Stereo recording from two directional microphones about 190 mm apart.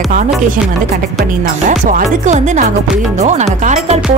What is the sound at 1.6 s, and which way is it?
Speech, 40° right (ahead or behind).